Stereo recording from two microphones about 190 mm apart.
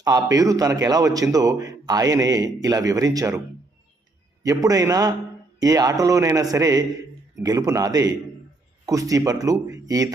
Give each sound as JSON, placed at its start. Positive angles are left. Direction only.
{"t": 0.0, "sound": "a man's voice", "side_deg": -20}
{"t": 4.4, "sound": "a man's voice", "side_deg": -20}